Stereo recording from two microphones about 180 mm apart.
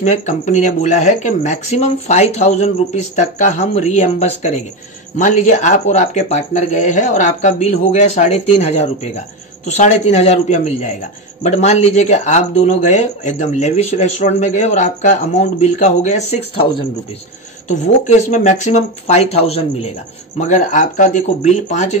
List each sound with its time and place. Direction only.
0.0 s speech: 40° left (ahead or behind)
17.6 s speech: 40° left (ahead or behind)